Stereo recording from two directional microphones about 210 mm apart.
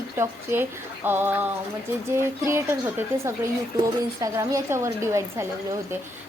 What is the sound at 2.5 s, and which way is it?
A woman's voice, 10° right (ahead or behind).